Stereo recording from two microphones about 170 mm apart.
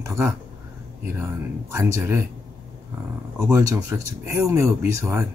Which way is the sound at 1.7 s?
15° right (ahead or behind).